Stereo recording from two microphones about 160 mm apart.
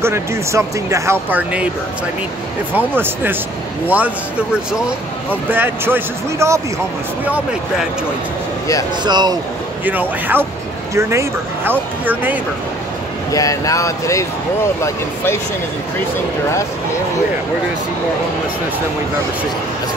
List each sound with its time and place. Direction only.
0.0 s speech: 15° right (ahead or behind)
2.9 s speech: 15° right (ahead or behind)
9.0 s speech: 25° right (ahead or behind)
9.8 s speech: 10° right (ahead or behind)
13.3 s speech: 20° left (ahead or behind)